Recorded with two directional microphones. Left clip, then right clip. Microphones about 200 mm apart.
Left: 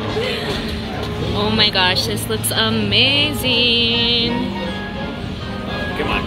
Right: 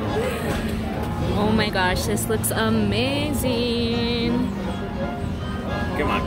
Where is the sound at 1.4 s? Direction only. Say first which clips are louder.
Left 6 dB; 10° right (ahead or behind).